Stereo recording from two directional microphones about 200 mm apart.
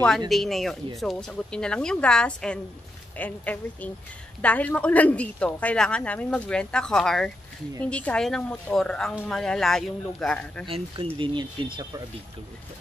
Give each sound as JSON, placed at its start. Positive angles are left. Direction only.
{"t": 0.3, "sound": "a woman's voice", "side_deg": 0}
{"t": 11.1, "sound": "speech", "side_deg": -25}